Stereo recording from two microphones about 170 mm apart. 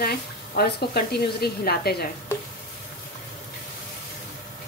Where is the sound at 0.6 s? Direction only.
70° left (ahead or behind).